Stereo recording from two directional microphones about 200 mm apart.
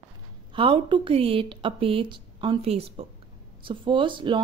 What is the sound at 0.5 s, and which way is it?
Speech, 25° right (ahead or behind).